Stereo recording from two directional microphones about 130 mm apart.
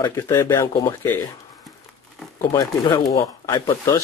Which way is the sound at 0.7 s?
30° left (ahead or behind).